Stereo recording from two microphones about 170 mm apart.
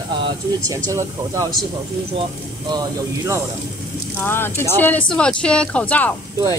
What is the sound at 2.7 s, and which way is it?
Speech, 20° right (ahead or behind).